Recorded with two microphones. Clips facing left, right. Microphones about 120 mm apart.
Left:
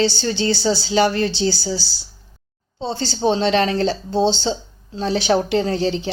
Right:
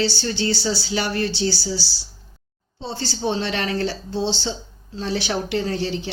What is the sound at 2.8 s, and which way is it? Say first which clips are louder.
A woman's voice: left 5 dB; 20° left (ahead or behind).